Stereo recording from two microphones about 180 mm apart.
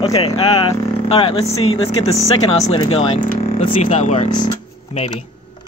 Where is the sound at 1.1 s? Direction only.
30° left (ahead or behind).